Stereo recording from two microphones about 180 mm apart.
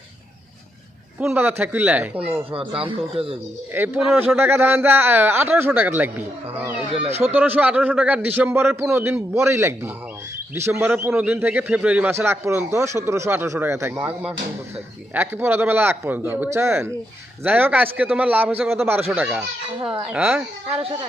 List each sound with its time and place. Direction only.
1.2 s a man's voice: 10° right (ahead or behind)
2.5 s speech: 30° right (ahead or behind)
3.8 s a man's voice: 5° right (ahead or behind)
6.9 s speech: 30° right (ahead or behind)
7.2 s a man's voice: 10° right (ahead or behind)